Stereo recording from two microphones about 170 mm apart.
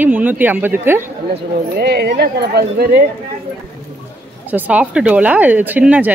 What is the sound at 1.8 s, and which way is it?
Speech, 75° right (ahead or behind).